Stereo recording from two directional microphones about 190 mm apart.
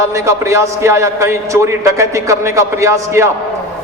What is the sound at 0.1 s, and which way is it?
A man's voice, 15° right (ahead or behind).